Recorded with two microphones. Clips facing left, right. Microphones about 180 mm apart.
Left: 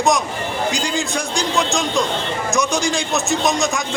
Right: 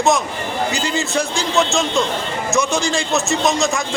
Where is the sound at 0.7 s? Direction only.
5° right (ahead or behind).